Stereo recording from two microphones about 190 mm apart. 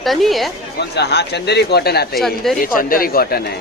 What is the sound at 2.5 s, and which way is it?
Speech, 45° left (ahead or behind).